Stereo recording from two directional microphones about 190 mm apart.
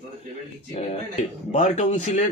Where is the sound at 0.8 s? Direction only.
35° left (ahead or behind).